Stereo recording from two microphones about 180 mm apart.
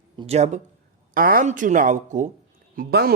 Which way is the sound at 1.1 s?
50° right (ahead or behind).